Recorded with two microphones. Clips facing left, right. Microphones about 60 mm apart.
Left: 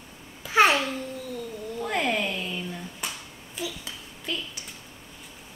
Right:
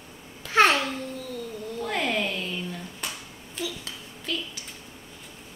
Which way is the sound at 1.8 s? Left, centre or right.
Centre.